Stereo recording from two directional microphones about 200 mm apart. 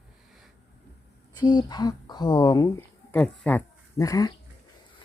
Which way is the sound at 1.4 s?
20° left (ahead or behind).